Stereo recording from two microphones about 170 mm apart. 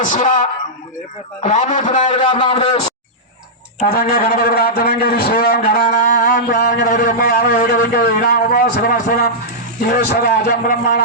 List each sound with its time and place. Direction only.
0.0 s a man's voice: 50° left (ahead or behind)
2.0 s a man's voice: 30° left (ahead or behind)
3.8 s a man's voice: 65° left (ahead or behind)